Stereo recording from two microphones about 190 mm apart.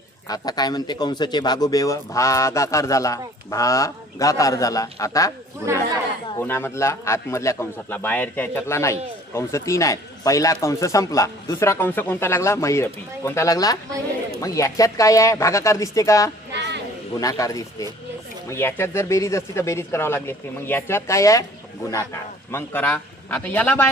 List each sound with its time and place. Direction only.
0.3 s a man's voice: 20° left (ahead or behind)
6.3 s a man's voice: 10° left (ahead or behind)
16.5 s a sound: 65° right (ahead or behind)
17.2 s a man's voice: 20° left (ahead or behind)
22.5 s a man's voice: 10° left (ahead or behind)